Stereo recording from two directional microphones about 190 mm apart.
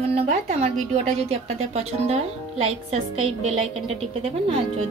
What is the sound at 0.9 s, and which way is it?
A woman's voice, 35° right (ahead or behind).